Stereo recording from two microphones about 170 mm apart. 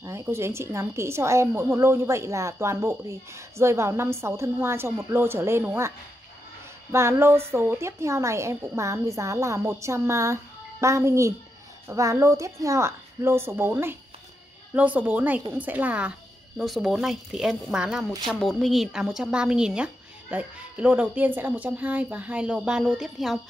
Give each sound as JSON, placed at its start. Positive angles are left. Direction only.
{"t": 0.0, "sound": "a woman's voice", "side_deg": -15}